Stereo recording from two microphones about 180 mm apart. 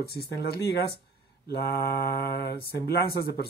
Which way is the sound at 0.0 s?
60° left (ahead or behind).